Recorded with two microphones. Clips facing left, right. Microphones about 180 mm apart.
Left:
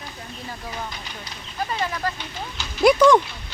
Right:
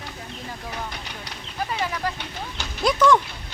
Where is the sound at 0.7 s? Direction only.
65° right (ahead or behind).